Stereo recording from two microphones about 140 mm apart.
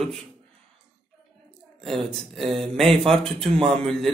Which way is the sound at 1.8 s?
Centre (ahead or behind).